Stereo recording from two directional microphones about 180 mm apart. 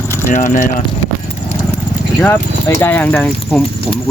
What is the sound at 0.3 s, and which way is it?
Speech, 45° left (ahead or behind).